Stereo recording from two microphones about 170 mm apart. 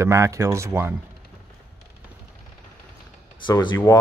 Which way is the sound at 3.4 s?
25° left (ahead or behind).